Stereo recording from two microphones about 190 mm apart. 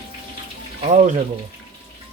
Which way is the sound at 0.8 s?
40° right (ahead or behind).